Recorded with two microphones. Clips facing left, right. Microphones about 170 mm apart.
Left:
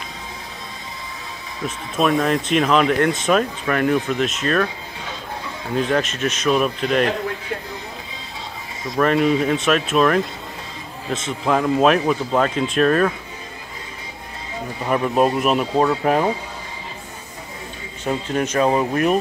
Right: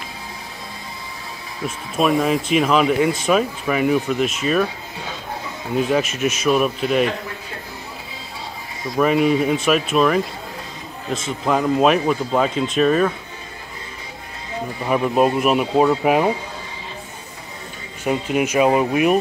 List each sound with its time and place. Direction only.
1.6 s speech: centre (ahead or behind)
5.8 s speech: 5° right (ahead or behind)
8.8 s speech: 5° right (ahead or behind)
14.9 s speech: 5° right (ahead or behind)
18.0 s speech: 10° right (ahead or behind)